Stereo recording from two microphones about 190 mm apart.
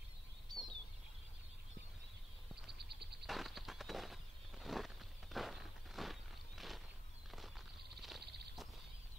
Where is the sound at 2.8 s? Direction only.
60° right (ahead or behind).